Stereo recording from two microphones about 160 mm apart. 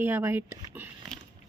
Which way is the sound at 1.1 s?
5° left (ahead or behind).